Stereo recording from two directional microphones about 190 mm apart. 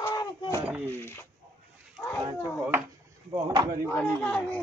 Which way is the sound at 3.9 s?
10° left (ahead or behind).